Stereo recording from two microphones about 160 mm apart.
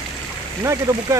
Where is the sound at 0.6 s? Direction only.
20° right (ahead or behind).